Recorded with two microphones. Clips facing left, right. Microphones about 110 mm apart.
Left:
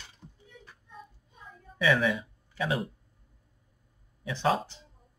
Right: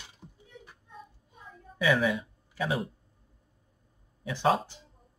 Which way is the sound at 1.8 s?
5° right (ahead or behind).